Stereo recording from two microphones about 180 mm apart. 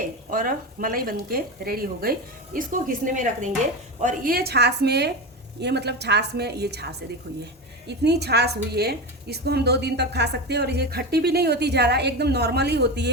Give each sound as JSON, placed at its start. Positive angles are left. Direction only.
{"t": 0.0, "sound": "a woman's voice", "side_deg": -50}
{"t": 7.9, "sound": "a woman's voice", "side_deg": -65}